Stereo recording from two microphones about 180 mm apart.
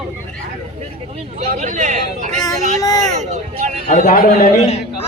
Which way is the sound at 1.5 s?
45° right (ahead or behind).